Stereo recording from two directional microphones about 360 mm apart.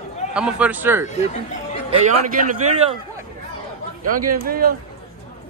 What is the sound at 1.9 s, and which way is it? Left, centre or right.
A man's voice, centre.